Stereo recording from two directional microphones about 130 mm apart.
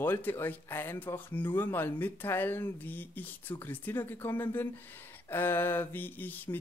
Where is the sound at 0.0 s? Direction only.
15° left (ahead or behind).